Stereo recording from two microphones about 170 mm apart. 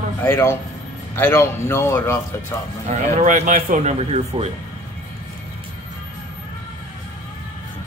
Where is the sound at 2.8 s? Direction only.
45° right (ahead or behind).